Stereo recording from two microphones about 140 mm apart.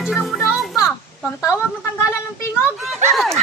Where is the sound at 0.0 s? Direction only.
Centre (ahead or behind).